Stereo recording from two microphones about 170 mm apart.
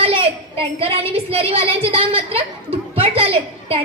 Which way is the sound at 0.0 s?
35° right (ahead or behind).